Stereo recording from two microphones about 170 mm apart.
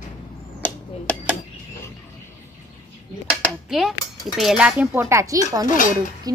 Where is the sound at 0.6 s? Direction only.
10° left (ahead or behind).